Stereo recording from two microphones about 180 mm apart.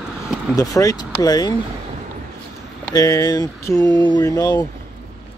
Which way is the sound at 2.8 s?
20° left (ahead or behind).